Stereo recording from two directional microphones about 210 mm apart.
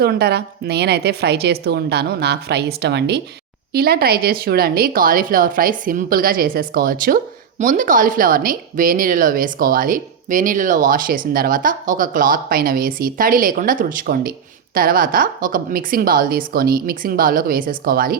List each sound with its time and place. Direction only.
0.0 s speech: 50° right (ahead or behind)